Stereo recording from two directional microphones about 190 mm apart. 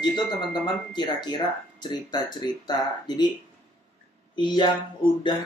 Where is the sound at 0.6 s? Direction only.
25° left (ahead or behind).